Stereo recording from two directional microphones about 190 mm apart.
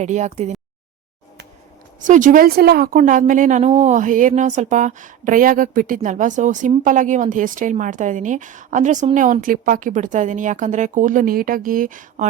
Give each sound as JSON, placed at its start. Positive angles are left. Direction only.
{"t": 0.0, "sound": "a woman's voice", "side_deg": -40}
{"t": 2.0, "sound": "a woman's voice", "side_deg": -45}